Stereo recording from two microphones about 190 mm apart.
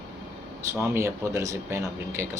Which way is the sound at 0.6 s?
15° right (ahead or behind).